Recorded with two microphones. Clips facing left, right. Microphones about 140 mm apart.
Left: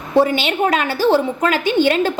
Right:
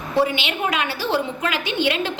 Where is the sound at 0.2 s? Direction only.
45° left (ahead or behind).